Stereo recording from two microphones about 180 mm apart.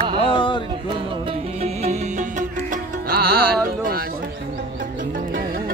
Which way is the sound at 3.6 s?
55° right (ahead or behind).